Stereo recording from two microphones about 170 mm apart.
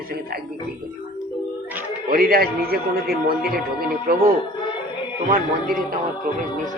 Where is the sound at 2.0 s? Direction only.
60° right (ahead or behind).